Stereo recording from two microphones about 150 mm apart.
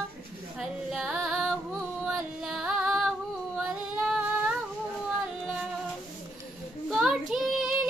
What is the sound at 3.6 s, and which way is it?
Female singing, 5° right (ahead or behind).